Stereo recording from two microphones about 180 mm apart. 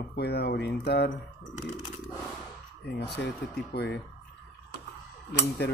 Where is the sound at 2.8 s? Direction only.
65° left (ahead or behind).